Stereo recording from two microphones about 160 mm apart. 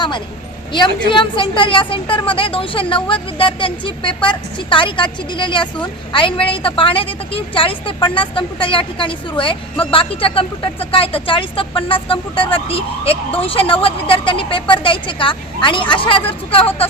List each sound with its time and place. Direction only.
0.7 s a woman's voice: 30° left (ahead or behind)